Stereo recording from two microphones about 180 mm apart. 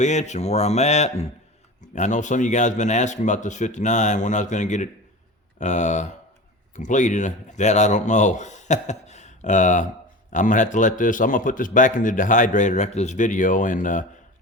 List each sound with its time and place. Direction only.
0.0 s a man's voice: 40° left (ahead or behind)